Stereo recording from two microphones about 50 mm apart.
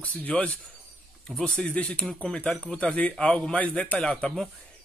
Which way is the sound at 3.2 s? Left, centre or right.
Centre.